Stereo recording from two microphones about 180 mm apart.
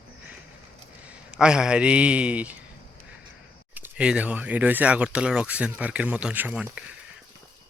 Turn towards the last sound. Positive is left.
turn(degrees=-5)  # may be behind; listen again after turning